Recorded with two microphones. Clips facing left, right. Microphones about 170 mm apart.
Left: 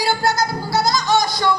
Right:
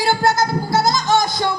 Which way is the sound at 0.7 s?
50° right (ahead or behind).